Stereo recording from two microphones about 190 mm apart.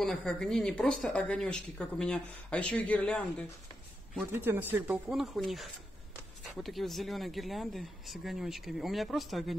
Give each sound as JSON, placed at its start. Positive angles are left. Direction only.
{"t": 0.0, "sound": "speech", "side_deg": 0}
{"t": 4.3, "sound": "speech", "side_deg": -10}